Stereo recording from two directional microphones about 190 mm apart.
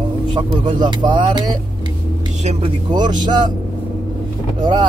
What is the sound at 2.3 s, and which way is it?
Speech, 35° right (ahead or behind).